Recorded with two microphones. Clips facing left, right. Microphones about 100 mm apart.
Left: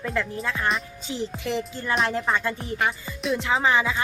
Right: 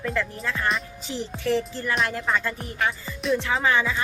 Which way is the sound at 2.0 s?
30° left (ahead or behind).